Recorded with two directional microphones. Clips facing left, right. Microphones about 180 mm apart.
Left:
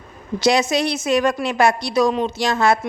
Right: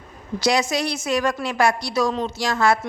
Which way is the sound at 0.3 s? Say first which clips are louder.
Left 3 dB; 25° left (ahead or behind).